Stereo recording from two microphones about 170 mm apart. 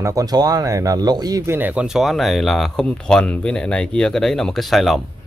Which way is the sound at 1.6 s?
10° right (ahead or behind).